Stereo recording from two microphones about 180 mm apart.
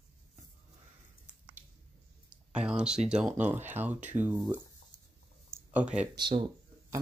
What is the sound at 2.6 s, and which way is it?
Speech, 5° right (ahead or behind).